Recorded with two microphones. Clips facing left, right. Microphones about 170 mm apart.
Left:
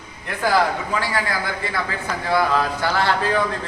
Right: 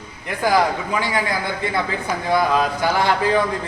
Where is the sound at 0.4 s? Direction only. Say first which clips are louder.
Right 1 dB; 15° right (ahead or behind).